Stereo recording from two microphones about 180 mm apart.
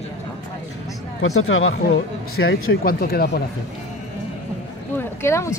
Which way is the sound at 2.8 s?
60° left (ahead or behind).